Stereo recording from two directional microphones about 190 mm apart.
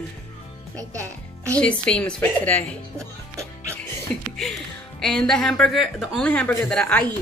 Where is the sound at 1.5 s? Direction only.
5° left (ahead or behind).